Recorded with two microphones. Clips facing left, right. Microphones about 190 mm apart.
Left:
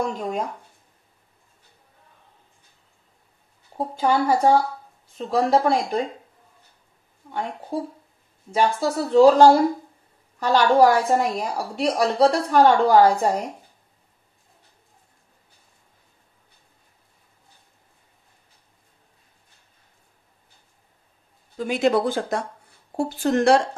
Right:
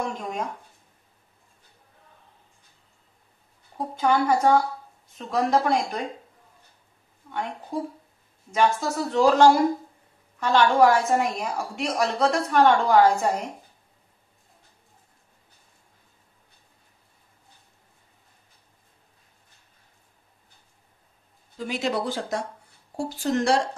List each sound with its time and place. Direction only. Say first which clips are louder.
0.2 s a woman's voice: left 4 dB; 35° left (ahead or behind)
3.7 s a woman's voice: left 1 dB; 30° left (ahead or behind)
7.2 s a woman's voice: left 2 dB; 30° left (ahead or behind)
21.6 s a woman's voice: left 7 dB; 55° left (ahead or behind)